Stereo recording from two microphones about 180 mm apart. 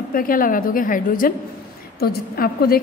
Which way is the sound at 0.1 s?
50° left (ahead or behind).